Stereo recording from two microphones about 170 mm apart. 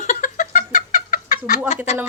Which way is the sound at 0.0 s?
50° left (ahead or behind).